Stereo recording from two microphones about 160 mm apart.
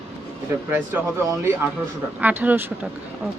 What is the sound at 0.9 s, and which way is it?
Speech, 10° right (ahead or behind).